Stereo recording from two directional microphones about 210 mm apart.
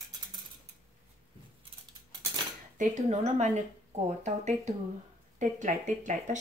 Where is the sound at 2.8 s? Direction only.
35° right (ahead or behind).